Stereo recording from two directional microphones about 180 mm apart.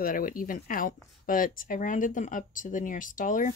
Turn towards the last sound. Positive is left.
turn(degrees=45)  # may be behind; listen again after turning